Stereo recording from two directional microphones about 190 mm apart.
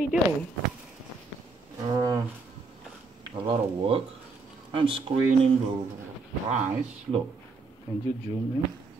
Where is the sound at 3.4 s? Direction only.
30° right (ahead or behind).